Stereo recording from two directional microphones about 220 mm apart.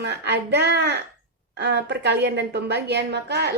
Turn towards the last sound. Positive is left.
turn(degrees=-50)  # may be behind; listen again after turning